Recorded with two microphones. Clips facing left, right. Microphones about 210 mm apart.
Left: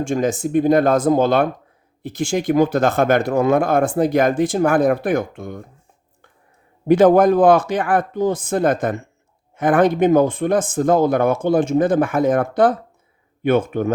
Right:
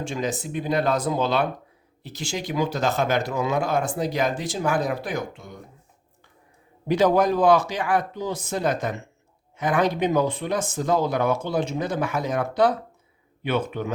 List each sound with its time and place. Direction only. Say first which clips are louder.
0.0 s speech: left 8 dB; 50° left (ahead or behind)
6.8 s speech: left 8 dB; 50° left (ahead or behind)